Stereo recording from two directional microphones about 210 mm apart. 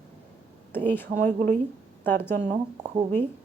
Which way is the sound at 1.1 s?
35° right (ahead or behind).